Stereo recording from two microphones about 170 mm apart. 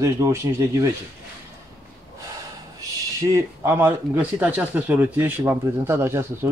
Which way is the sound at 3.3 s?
15° right (ahead or behind).